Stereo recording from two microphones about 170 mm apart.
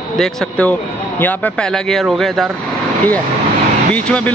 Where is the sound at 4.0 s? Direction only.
5° left (ahead or behind).